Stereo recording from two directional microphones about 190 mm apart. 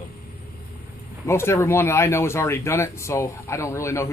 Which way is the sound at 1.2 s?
15° left (ahead or behind).